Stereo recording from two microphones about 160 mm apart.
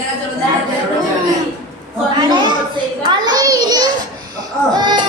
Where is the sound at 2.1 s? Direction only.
25° right (ahead or behind).